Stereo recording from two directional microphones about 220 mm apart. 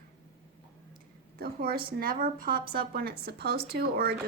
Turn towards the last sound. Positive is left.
turn(degrees=-45)  # may be behind; listen again after turning